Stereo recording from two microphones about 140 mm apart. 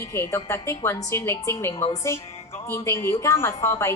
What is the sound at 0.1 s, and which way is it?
A woman's voice, 20° left (ahead or behind).